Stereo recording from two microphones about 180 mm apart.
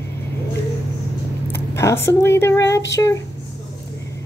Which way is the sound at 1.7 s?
15° left (ahead or behind).